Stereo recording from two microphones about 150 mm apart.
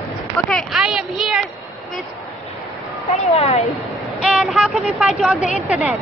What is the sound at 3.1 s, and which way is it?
Speech, 45° left (ahead or behind).